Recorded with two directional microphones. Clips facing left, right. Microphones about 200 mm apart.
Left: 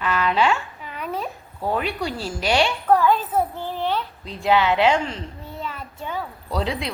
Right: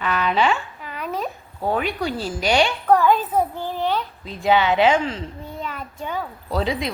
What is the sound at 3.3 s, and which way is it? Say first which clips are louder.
Speech: right 1 dB; 15° right (ahead or behind).